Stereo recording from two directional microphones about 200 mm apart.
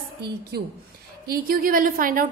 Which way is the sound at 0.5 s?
55° right (ahead or behind).